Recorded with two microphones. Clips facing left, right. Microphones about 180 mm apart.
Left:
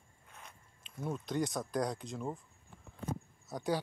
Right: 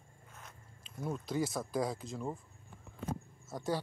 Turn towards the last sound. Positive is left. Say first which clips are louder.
# left 1 dB
turn(degrees=0)  # may be behind; listen again after turning